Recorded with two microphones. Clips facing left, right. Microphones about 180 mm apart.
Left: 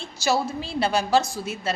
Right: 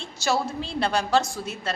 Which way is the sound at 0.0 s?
5° left (ahead or behind).